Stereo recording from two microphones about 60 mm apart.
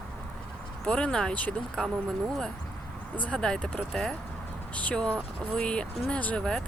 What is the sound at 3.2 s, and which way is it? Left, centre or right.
Speech, centre.